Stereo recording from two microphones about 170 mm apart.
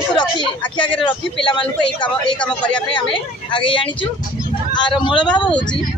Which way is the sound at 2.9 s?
30° left (ahead or behind).